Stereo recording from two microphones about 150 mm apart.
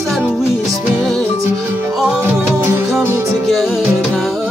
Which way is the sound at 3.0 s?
15° right (ahead or behind).